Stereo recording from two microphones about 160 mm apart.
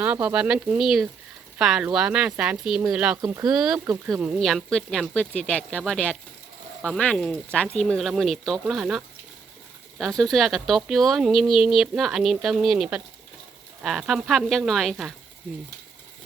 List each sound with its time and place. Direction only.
0.0 s speech: 10° right (ahead or behind)
3.2 s speech: 20° right (ahead or behind)
3.5 s speech: 5° right (ahead or behind)